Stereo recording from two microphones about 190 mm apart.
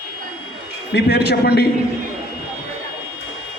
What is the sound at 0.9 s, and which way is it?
Speech, 60° left (ahead or behind).